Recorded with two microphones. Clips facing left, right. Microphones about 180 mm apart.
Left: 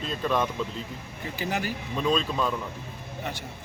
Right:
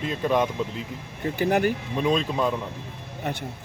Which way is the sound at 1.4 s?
55° right (ahead or behind).